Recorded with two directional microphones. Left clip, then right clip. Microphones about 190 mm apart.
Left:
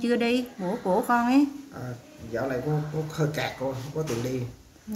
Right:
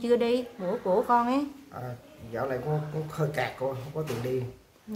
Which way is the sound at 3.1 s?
20° right (ahead or behind).